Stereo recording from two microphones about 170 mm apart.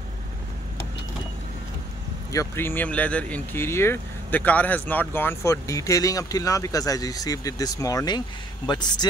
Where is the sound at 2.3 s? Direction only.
15° left (ahead or behind).